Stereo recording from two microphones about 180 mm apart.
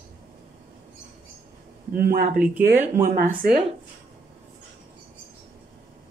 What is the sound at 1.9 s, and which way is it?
Speech, 50° right (ahead or behind).